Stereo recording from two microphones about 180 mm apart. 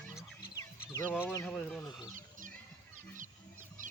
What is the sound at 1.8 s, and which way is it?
Speech, 25° left (ahead or behind).